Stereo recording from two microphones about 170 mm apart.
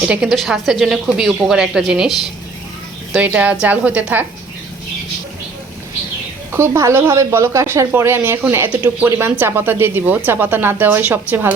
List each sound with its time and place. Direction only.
0.1 s a woman's voice: centre (ahead or behind)
6.6 s speech: 15° right (ahead or behind)